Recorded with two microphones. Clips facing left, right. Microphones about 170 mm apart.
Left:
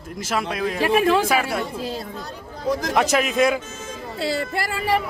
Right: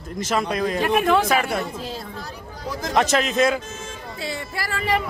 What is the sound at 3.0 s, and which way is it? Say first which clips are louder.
Speech: right 1 dB; 10° left (ahead or behind).